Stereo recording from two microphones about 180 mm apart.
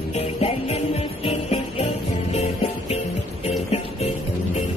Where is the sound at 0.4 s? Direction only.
35° left (ahead or behind).